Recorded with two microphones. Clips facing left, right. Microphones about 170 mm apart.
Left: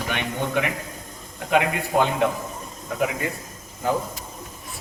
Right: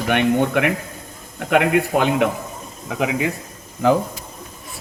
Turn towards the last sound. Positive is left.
turn(degrees=-90)